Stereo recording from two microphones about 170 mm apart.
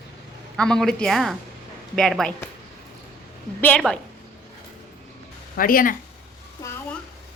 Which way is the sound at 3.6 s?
5° left (ahead or behind).